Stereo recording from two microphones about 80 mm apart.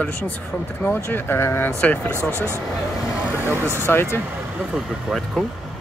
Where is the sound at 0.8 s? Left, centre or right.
Left.